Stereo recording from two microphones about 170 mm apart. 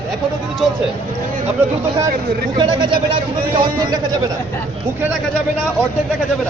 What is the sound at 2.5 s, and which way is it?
A man's voice, 25° right (ahead or behind).